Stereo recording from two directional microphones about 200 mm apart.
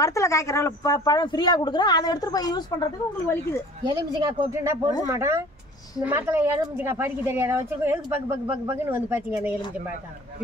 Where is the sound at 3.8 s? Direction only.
20° right (ahead or behind).